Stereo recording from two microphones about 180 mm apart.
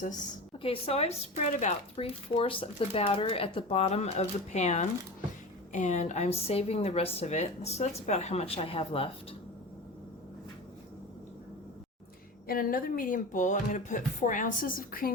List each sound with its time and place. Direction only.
0.6 s speech: 30° left (ahead or behind)
12.5 s speech: 55° left (ahead or behind)